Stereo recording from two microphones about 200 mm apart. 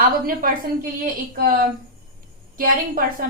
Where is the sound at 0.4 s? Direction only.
45° right (ahead or behind).